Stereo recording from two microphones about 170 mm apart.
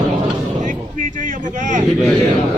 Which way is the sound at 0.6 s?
50° right (ahead or behind).